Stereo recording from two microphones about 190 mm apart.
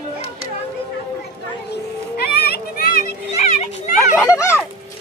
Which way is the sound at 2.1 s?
55° left (ahead or behind).